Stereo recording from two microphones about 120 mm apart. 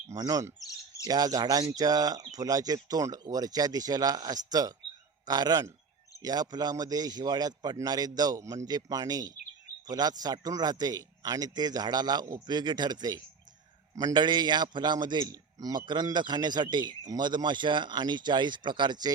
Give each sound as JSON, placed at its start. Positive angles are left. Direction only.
{"t": 0.1, "sound": "a man's voice", "side_deg": -30}